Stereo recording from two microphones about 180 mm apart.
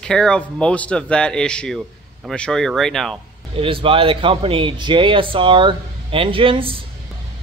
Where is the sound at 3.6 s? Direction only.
30° right (ahead or behind).